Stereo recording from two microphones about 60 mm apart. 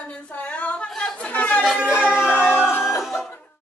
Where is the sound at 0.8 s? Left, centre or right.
Centre.